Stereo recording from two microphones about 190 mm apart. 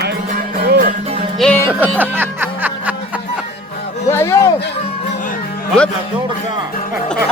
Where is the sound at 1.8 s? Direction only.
10° right (ahead or behind).